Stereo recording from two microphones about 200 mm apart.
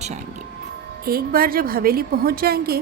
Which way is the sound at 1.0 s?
45° right (ahead or behind).